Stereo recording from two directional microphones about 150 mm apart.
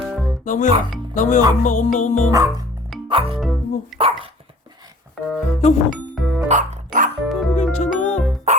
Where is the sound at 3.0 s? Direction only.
35° right (ahead or behind).